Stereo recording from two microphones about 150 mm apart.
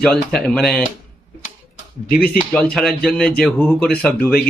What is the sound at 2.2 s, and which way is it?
Speech, 90° left.